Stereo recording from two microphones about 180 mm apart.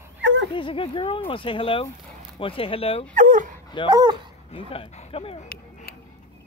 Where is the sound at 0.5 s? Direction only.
30° left (ahead or behind).